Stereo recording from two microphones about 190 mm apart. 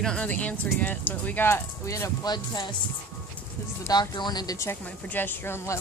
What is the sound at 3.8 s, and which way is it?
Speech, 20° left (ahead or behind).